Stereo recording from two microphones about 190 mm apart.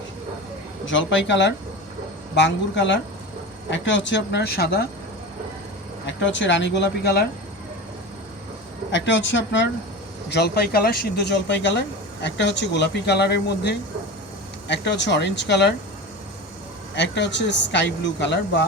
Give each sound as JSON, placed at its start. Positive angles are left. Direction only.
{"t": 0.9, "sound": "a man's voice", "side_deg": 75}
{"t": 6.1, "sound": "a man's voice", "side_deg": 75}
{"t": 8.9, "sound": "a man's voice", "side_deg": 75}
{"t": 10.2, "sound": "a man's voice", "side_deg": 60}
{"t": 16.9, "sound": "a man's voice", "side_deg": 65}